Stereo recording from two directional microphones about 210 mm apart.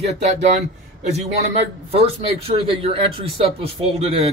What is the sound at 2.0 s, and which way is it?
A man's voice, 25° right (ahead or behind).